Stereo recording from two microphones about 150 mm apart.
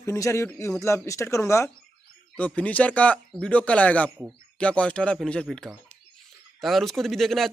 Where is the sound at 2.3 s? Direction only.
10° left (ahead or behind).